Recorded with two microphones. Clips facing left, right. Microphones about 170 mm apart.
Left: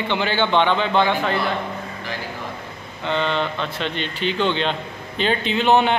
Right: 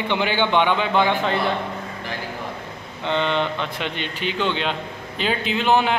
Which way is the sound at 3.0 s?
20° right (ahead or behind).